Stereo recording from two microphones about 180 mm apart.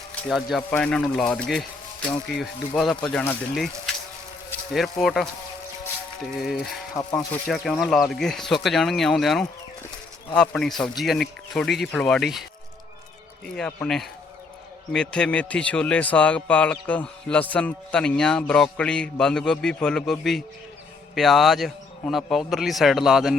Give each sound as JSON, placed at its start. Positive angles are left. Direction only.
{"t": 0.2, "sound": "speech", "side_deg": 0}
{"t": 6.4, "sound": "speech", "side_deg": 0}
{"t": 6.9, "sound": "speech", "side_deg": 20}
{"t": 7.4, "sound": "speech", "side_deg": 0}
{"t": 13.6, "sound": "speech", "side_deg": 5}